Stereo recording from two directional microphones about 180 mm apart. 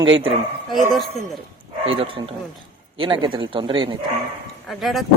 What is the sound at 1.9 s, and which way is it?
Speech, 30° right (ahead or behind).